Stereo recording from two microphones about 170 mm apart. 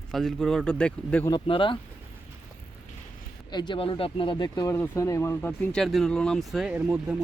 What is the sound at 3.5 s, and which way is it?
Speech, 25° left (ahead or behind).